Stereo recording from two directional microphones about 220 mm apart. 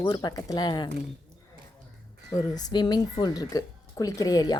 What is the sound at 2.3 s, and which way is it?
Speech, 15° left (ahead or behind).